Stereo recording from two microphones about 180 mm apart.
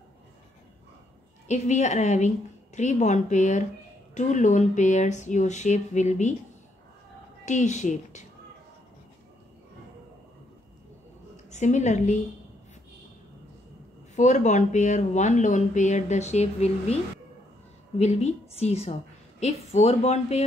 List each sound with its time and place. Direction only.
1.5 s speech: 40° left (ahead or behind)
7.4 s speech: 40° left (ahead or behind)
11.5 s speech: 40° left (ahead or behind)
14.1 s speech: 40° left (ahead or behind)